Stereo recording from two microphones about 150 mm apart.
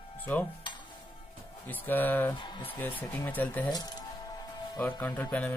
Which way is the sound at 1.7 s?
10° left (ahead or behind).